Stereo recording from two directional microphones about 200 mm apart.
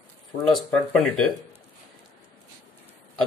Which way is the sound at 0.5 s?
Centre (ahead or behind).